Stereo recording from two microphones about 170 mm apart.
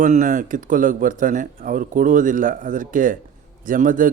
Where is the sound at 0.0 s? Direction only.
50° right (ahead or behind).